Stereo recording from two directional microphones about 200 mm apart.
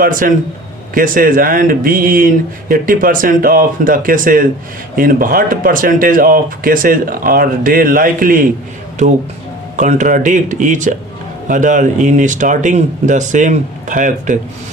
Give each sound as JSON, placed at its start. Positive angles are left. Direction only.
{"t": 0.0, "sound": "speech", "side_deg": -45}
{"t": 9.7, "sound": "speech", "side_deg": -40}